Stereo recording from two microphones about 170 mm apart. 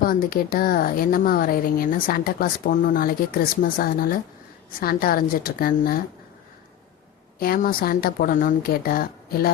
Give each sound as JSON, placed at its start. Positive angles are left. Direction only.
{"t": 0.0, "sound": "speech", "side_deg": 55}
{"t": 7.3, "sound": "speech", "side_deg": 60}